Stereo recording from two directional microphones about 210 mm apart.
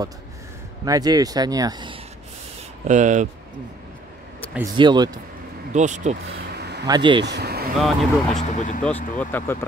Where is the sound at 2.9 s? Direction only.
35° right (ahead or behind).